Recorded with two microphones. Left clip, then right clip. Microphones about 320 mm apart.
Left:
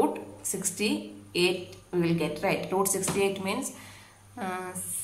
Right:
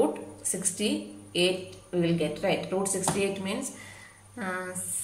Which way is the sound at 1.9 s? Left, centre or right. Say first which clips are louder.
Even; centre.